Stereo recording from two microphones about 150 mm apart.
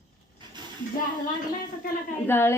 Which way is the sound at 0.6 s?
30° right (ahead or behind).